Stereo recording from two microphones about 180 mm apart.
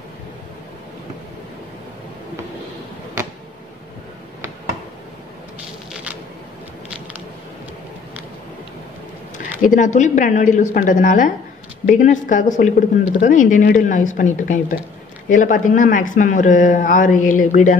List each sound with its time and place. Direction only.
9.6 s a man's voice: 45° left (ahead or behind)